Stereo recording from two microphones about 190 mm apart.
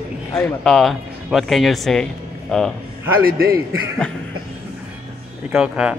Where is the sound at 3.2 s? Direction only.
50° right (ahead or behind).